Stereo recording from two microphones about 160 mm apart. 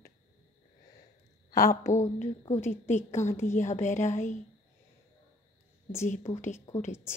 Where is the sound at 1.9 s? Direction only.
50° left (ahead or behind).